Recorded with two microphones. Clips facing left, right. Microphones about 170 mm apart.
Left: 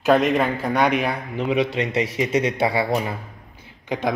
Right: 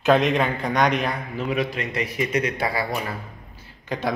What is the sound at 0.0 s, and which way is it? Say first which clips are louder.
A man's voice: left 1 dB; centre (ahead or behind).